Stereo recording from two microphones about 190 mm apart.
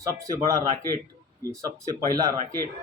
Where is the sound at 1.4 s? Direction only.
20° right (ahead or behind).